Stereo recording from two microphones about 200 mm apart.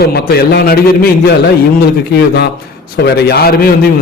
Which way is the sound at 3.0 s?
55° left (ahead or behind).